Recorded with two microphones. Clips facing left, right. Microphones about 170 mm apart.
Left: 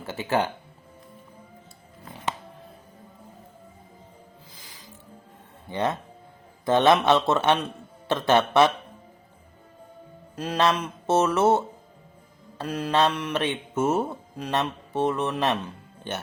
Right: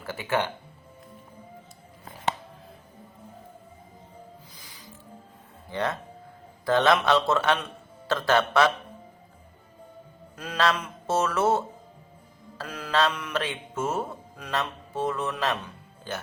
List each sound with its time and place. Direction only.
0.0 s a man's voice: 25° left (ahead or behind)
5.7 s a man's voice: 20° left (ahead or behind)
10.3 s a man's voice: 20° left (ahead or behind)